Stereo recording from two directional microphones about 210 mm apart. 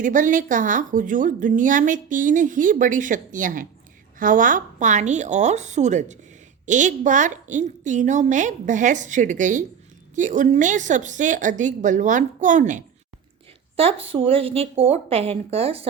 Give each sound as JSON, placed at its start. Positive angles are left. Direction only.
{"t": 0.0, "sound": "a woman's voice", "side_deg": -35}